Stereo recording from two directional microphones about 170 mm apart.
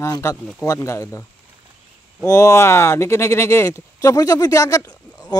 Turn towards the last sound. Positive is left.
turn(degrees=20)  # may be behind; listen again after turning